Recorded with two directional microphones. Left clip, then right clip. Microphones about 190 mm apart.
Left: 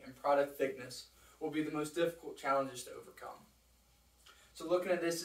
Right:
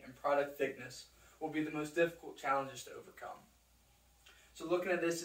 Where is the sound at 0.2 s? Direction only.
20° left (ahead or behind).